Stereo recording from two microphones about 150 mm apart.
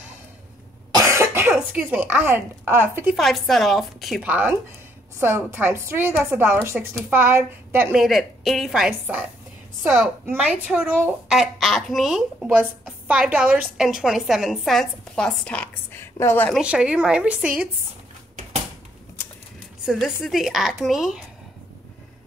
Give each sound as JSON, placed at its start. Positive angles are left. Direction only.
{"t": 0.9, "sound": "cough", "side_deg": -20}
{"t": 1.5, "sound": "a woman's voice", "side_deg": -10}
{"t": 3.2, "sound": "speech", "side_deg": 0}
{"t": 4.2, "sound": "a woman's voice", "side_deg": -10}
{"t": 7.9, "sound": "speech", "side_deg": 0}
{"t": 10.3, "sound": "speech", "side_deg": -10}
{"t": 16.5, "sound": "a woman's voice", "side_deg": -5}
{"t": 19.8, "sound": "speech", "side_deg": -5}